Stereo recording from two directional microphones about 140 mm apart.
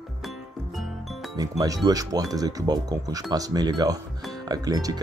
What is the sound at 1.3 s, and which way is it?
Speech, 25° right (ahead or behind).